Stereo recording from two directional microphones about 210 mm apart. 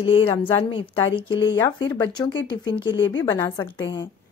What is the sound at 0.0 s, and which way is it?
Speech, 25° left (ahead or behind).